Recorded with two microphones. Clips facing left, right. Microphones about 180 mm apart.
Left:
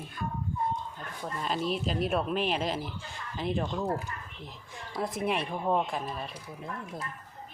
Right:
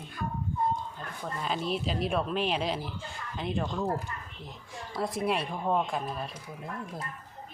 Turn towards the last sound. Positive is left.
turn(degrees=0)  # may be behind; listen again after turning